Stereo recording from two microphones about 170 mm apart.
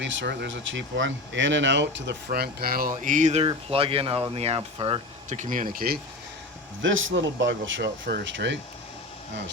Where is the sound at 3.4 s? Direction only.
30° right (ahead or behind).